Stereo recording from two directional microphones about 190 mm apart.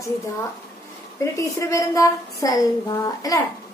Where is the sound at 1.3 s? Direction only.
15° left (ahead or behind).